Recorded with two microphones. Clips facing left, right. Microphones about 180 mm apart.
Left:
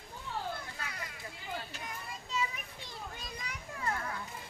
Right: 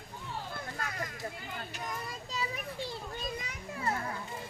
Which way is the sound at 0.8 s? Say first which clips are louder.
Right 6 dB; 45° right (ahead or behind).